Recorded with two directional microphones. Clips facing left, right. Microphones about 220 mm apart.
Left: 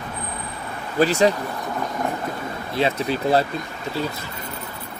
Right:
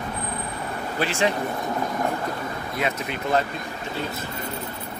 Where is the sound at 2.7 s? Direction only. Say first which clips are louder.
Left 7 dB; 30° left (ahead or behind).